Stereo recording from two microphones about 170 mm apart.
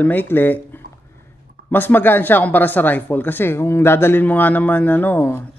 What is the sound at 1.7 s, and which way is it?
Speech, 10° left (ahead or behind).